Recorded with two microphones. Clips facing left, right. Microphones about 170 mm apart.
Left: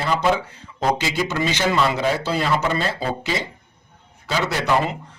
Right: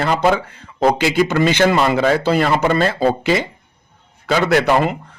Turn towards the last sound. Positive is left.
turn(degrees=-55)  # may be behind; listen again after turning